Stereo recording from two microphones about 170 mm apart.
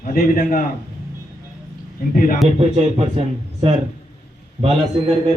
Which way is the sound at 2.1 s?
55° left (ahead or behind).